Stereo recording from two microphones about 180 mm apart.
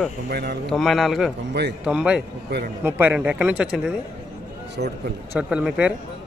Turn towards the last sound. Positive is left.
turn(degrees=-5)  # may be behind; listen again after turning